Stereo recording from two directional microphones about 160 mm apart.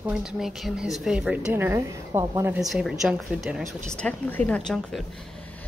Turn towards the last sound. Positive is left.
turn(degrees=5)  # may be behind; listen again after turning